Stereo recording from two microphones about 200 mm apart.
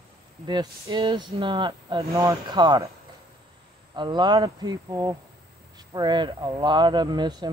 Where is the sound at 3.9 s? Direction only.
20° right (ahead or behind).